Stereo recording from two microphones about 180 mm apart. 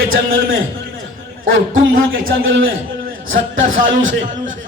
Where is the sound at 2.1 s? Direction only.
90° right.